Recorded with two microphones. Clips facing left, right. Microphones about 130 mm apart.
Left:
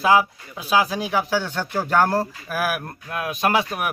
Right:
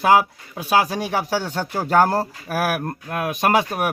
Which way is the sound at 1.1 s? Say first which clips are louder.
Even; 35° right (ahead or behind).